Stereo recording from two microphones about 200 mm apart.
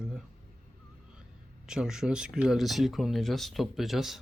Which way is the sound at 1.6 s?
5° right (ahead or behind).